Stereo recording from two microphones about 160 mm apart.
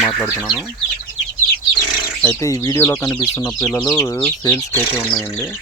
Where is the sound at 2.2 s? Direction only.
20° left (ahead or behind).